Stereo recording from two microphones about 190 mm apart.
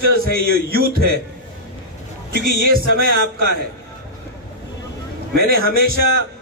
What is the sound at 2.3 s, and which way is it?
A man's voice, 55° right (ahead or behind).